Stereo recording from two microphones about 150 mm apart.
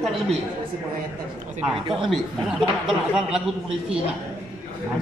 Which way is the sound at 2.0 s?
Centre (ahead or behind).